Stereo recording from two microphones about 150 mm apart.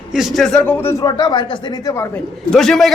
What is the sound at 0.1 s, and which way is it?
Speech, centre (ahead or behind).